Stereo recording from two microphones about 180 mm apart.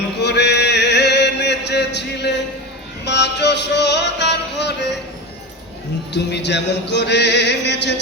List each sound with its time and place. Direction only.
0.2 s chant: 70° left (ahead or behind)
3.0 s music: 70° left (ahead or behind)
6.1 s music: 70° left (ahead or behind)